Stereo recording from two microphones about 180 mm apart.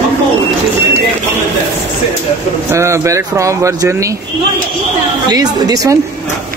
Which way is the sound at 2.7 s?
15° right (ahead or behind).